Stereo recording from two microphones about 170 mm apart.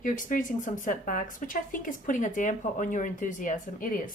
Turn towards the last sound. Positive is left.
turn(degrees=50)  # may be behind; listen again after turning